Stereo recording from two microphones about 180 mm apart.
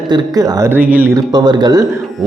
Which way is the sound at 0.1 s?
20° right (ahead or behind).